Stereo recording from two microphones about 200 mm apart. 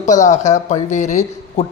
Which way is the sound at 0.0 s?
35° left (ahead or behind).